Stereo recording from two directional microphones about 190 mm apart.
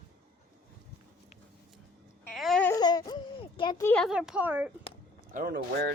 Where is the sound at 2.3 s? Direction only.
Centre (ahead or behind).